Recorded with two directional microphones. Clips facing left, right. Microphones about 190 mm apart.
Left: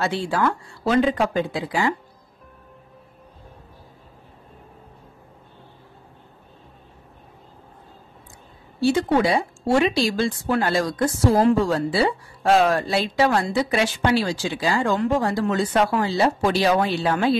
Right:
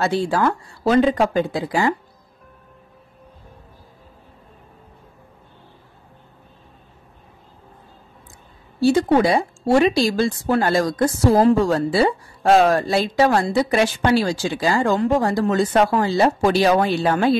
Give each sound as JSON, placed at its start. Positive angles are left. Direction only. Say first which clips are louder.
{"t": 0.0, "sound": "speech", "louder": "right 3 dB", "side_deg": -40}
{"t": 8.8, "sound": "speech", "louder": "right 3 dB", "side_deg": -40}